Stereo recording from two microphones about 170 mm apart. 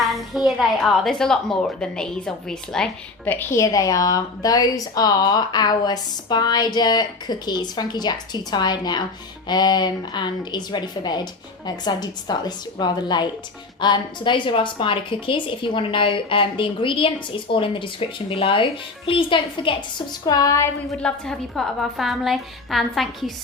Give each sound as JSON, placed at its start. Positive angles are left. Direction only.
{"t": 0.1, "sound": "a woman's voice", "side_deg": 0}
{"t": 21.0, "sound": "a woman's voice", "side_deg": 5}